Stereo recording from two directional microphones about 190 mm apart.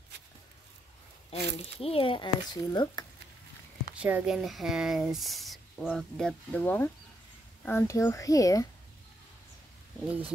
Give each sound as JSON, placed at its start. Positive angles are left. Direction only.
{"t": 1.6, "sound": "speech", "side_deg": 30}
{"t": 3.9, "sound": "speech", "side_deg": -5}
{"t": 10.0, "sound": "speech", "side_deg": -10}